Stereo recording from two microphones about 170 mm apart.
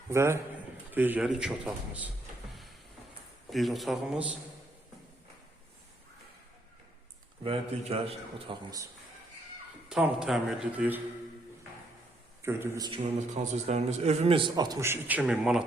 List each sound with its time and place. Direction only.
0.1 s a man's voice: 15° right (ahead or behind)
3.5 s speech: centre (ahead or behind)
7.4 s a man's voice: 35° right (ahead or behind)
9.9 s speech: 5° right (ahead or behind)
12.4 s a man's voice: 15° right (ahead or behind)
12.9 s a man's voice: 45° right (ahead or behind); by 15.6 s 5° right (ahead or behind)